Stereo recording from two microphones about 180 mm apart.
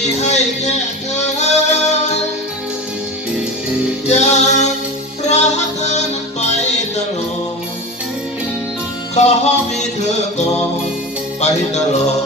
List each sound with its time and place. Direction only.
0.0 s music: 40° left (ahead or behind)
4.1 s music: 40° left (ahead or behind)
9.1 s music: 40° left (ahead or behind)